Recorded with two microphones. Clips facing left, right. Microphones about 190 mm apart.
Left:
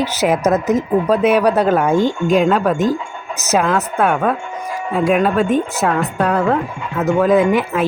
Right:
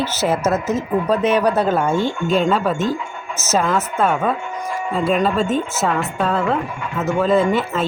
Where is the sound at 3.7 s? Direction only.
5° right (ahead or behind).